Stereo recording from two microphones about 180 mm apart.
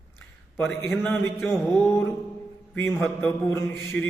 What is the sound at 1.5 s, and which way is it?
A man's voice, 15° left (ahead or behind).